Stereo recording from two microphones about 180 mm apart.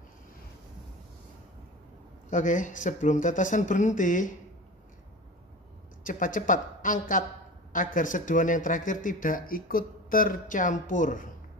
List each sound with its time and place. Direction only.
2.2 s speech: 45° left (ahead or behind)
6.0 s speech: 50° left (ahead or behind)